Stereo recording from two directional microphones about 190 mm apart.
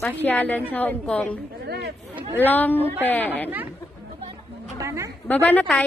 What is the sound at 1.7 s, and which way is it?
Speech, 60° right (ahead or behind).